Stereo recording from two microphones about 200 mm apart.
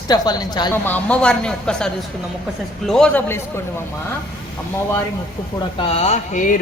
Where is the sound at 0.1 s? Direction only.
20° left (ahead or behind).